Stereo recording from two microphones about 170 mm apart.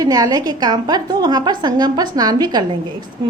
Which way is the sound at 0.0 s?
20° right (ahead or behind).